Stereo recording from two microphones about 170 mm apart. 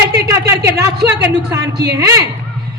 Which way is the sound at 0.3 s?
20° right (ahead or behind).